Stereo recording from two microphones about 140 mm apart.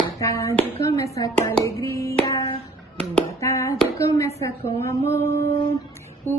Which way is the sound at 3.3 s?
20° left (ahead or behind).